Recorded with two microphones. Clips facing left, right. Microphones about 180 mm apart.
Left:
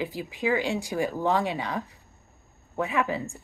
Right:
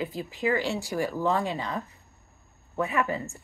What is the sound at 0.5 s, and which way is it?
Speech, 15° left (ahead or behind).